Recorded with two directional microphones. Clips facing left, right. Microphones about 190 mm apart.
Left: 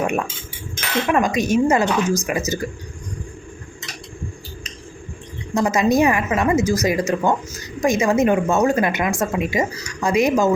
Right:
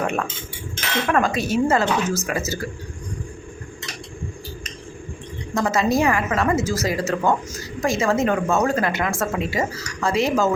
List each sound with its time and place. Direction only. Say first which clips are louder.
0.0 s a woman's voice: left 2 dB; 15° left (ahead or behind)
5.5 s a woman's voice: left 3 dB; 15° left (ahead or behind)